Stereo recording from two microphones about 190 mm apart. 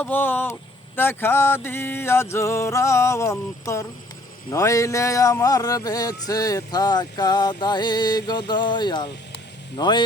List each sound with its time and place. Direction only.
0.0 s music: 10° left (ahead or behind)
4.5 s a man's voice: 15° left (ahead or behind)